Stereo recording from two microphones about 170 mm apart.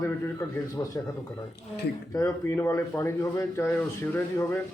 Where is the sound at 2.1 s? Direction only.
15° left (ahead or behind).